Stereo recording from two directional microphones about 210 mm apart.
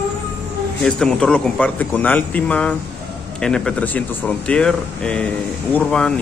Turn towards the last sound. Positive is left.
turn(degrees=5)  # may be behind; listen again after turning